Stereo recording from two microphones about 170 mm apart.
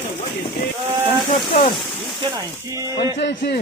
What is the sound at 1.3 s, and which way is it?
Speech, 45° left (ahead or behind).